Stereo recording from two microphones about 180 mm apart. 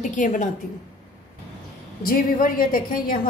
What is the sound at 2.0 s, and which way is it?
Speech, 50° left (ahead or behind).